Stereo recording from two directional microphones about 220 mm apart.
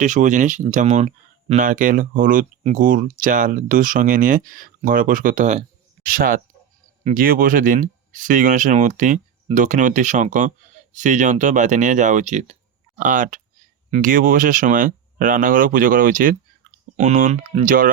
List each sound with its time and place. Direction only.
0.0 s speech: 35° right (ahead or behind)